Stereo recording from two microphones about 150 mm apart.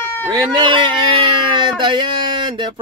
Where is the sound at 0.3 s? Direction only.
30° right (ahead or behind).